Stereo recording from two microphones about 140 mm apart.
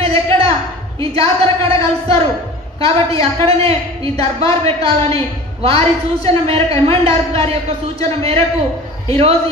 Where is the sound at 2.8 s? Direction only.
40° right (ahead or behind).